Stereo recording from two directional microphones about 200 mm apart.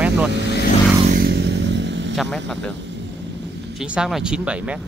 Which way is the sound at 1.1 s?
55° right (ahead or behind).